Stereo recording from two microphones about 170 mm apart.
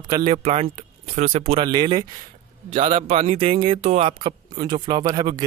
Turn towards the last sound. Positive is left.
turn(degrees=-25)  # may be behind; listen again after turning